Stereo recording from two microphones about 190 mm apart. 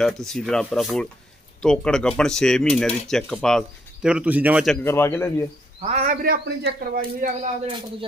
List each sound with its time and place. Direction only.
0.0 s speech: 5° left (ahead or behind)
4.8 s a man's voice: 15° left (ahead or behind)
5.8 s a man's voice: 35° right (ahead or behind)
6.2 s a man's voice: 55° right (ahead or behind)